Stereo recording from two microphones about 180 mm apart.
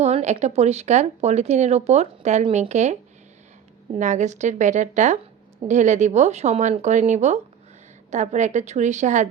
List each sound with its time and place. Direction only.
0.0 s speech: 40° right (ahead or behind)